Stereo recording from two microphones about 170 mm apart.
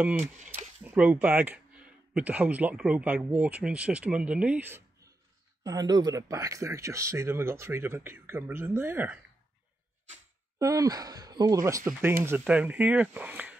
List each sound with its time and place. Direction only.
0.8 s speech: 10° right (ahead or behind)
10.6 s speech: 20° right (ahead or behind)